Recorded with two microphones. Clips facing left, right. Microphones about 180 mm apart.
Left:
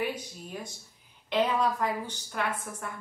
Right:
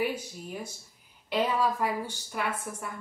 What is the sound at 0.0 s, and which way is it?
A woman's voice, 10° right (ahead or behind).